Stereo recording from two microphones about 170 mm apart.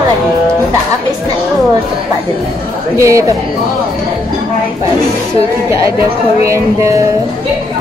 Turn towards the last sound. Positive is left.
turn(degrees=-15)  # may be behind; listen again after turning